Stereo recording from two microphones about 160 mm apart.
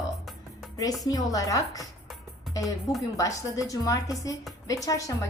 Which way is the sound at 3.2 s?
20° left (ahead or behind).